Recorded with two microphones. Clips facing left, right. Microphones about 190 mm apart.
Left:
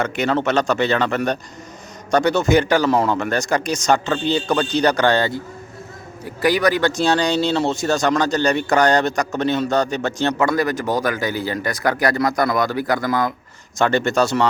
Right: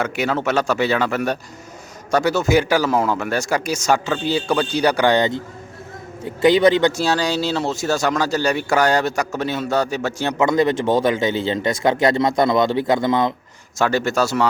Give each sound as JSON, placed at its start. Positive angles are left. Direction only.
{"t": 0.0, "sound": "speech", "side_deg": -5}
{"t": 6.9, "sound": "speech", "side_deg": -5}
{"t": 13.7, "sound": "speech", "side_deg": -5}